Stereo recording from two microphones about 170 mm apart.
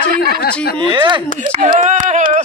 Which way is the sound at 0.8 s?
30° right (ahead or behind).